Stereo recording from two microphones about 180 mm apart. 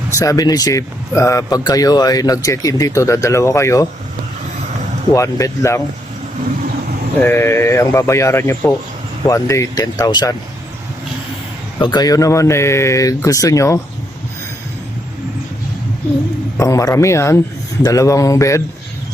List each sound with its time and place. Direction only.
0.1 s speech: 20° left (ahead or behind)
5.1 s speech: 15° left (ahead or behind)
7.2 s speech: 10° left (ahead or behind)
11.8 s speech: 25° left (ahead or behind)
16.6 s speech: 20° left (ahead or behind)